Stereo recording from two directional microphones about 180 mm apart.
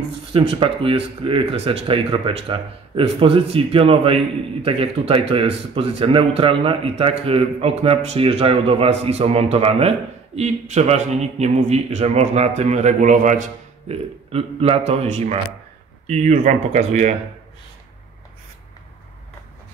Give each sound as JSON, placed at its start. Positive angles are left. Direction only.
{"t": 0.3, "sound": "speech", "side_deg": -30}
{"t": 14.3, "sound": "speech", "side_deg": -30}